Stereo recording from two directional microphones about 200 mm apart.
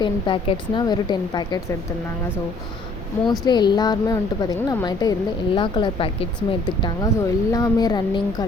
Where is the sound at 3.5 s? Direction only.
20° left (ahead or behind).